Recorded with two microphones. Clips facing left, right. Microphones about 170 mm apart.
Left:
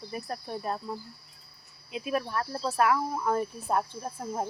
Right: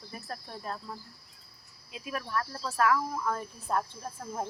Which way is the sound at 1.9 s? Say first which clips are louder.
Left 4 dB; 20° left (ahead or behind).